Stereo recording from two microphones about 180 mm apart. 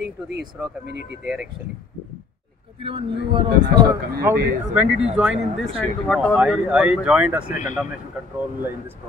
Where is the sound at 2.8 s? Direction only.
30° right (ahead or behind).